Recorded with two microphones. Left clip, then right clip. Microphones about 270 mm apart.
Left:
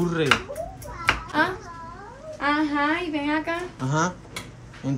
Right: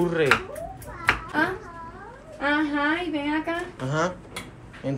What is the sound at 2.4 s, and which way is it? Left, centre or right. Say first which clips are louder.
A woman's voice: left 1 dB; centre.